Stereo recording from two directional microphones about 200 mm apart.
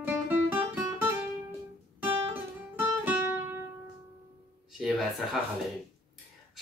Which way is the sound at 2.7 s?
10° right (ahead or behind).